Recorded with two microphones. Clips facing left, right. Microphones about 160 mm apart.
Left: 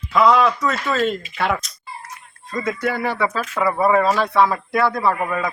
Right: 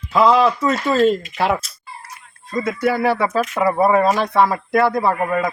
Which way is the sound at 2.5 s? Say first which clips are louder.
Right 3 dB; 10° right (ahead or behind).